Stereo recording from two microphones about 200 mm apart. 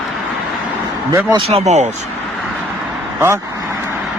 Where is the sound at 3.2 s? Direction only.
15° right (ahead or behind).